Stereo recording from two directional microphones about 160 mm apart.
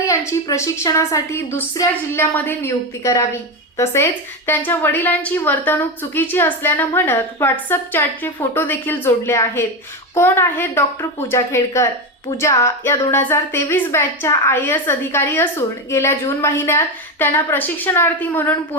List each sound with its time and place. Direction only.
0.3 s a woman's voice: 20° left (ahead or behind)